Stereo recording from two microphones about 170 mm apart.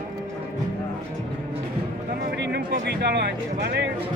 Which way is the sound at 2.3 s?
90° right.